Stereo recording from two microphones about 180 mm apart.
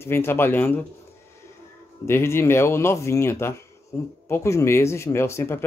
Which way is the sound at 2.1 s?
15° left (ahead or behind).